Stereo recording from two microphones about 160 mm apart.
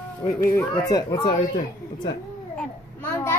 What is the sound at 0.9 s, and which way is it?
Speech, 25° left (ahead or behind).